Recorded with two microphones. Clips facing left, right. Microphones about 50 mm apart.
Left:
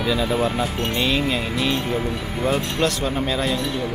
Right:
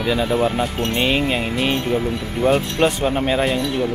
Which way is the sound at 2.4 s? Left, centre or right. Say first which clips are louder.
Right 5 dB; centre.